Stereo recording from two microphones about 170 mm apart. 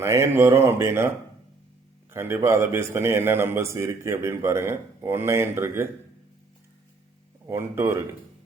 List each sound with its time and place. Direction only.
0.0 s a man's voice: 15° right (ahead or behind)
7.4 s a man's voice: 15° right (ahead or behind)